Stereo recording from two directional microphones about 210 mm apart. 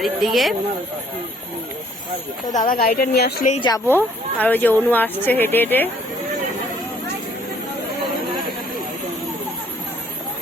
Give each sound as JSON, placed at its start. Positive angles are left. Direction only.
{"t": 0.0, "sound": "speech", "side_deg": 0}
{"t": 2.6, "sound": "speech", "side_deg": 40}
{"t": 3.5, "sound": "speech", "side_deg": 20}
{"t": 3.9, "sound": "speech", "side_deg": 10}